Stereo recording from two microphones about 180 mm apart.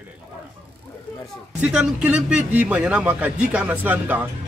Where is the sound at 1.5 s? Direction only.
5° right (ahead or behind).